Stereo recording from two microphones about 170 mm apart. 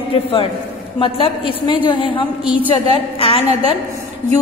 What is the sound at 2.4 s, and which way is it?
Speech, 10° right (ahead or behind).